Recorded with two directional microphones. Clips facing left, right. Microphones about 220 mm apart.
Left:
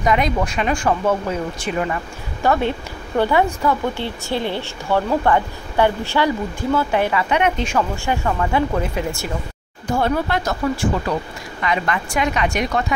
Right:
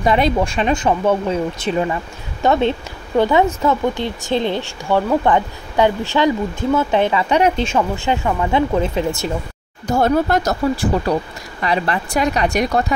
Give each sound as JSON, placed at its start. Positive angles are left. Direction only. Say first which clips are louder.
{"t": 0.0, "sound": "speech", "louder": "right 3 dB", "side_deg": -30}
{"t": 9.8, "sound": "speech", "louder": "right 4 dB", "side_deg": -40}